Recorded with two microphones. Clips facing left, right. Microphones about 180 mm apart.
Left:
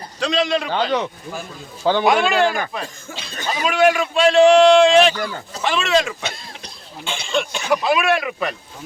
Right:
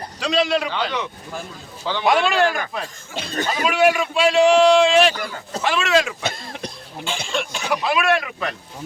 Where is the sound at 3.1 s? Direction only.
50° right (ahead or behind).